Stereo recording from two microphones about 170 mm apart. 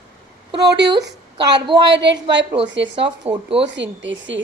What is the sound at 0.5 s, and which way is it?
Speech, 85° right.